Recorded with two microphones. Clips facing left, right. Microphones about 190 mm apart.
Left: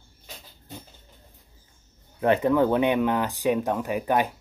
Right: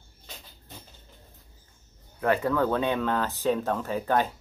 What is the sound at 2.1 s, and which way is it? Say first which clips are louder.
Speech: left 4 dB; 20° left (ahead or behind).